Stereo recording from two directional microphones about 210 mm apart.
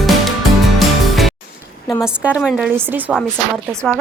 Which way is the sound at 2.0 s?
5° right (ahead or behind).